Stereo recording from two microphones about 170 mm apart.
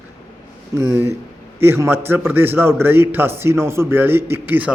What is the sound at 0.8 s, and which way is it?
A man's voice, 15° right (ahead or behind).